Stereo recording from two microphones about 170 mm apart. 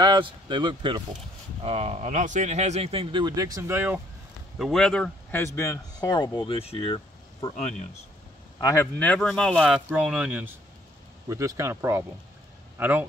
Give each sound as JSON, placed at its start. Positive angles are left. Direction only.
{"t": 0.0, "sound": "speech", "side_deg": -25}
{"t": 1.6, "sound": "speech", "side_deg": -40}
{"t": 4.6, "sound": "speech", "side_deg": 0}
{"t": 8.5, "sound": "speech", "side_deg": 20}
{"t": 9.8, "sound": "speech", "side_deg": -5}